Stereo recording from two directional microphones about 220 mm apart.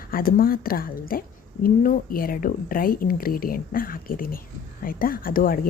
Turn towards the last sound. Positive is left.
turn(degrees=40)  # may be behind; listen again after turning